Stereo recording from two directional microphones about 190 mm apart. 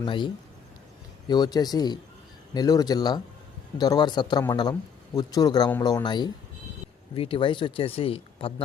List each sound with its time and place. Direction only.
0.0 s a man's voice: 25° left (ahead or behind)
1.3 s a man's voice: 20° left (ahead or behind)